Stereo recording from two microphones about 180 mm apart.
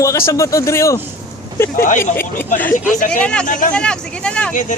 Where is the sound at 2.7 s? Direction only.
45° left (ahead or behind).